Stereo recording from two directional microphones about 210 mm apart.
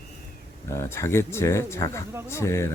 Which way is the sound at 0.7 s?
15° left (ahead or behind).